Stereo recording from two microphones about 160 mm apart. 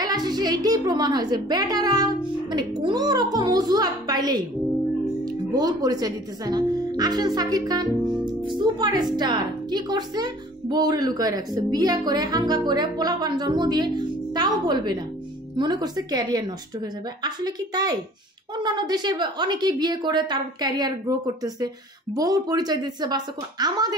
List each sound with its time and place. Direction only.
0.0 s speech: 25° right (ahead or behind)
5.5 s speech: 25° right (ahead or behind)